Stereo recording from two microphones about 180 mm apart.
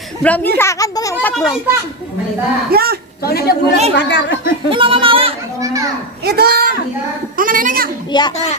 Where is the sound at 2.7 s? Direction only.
60° right (ahead or behind).